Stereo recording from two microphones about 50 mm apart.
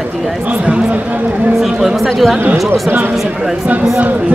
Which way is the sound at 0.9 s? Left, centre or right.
Right.